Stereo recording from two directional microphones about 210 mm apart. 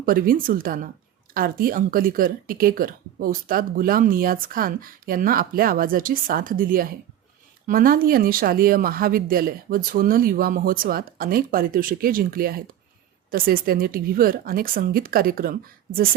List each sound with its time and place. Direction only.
0.0 s speech: 45° right (ahead or behind)